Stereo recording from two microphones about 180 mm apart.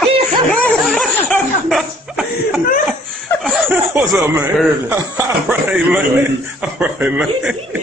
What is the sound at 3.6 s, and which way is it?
Snicker, 10° right (ahead or behind).